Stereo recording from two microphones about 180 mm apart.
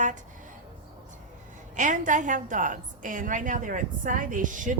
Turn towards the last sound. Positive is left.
turn(degrees=-45)  # may be behind; listen again after turning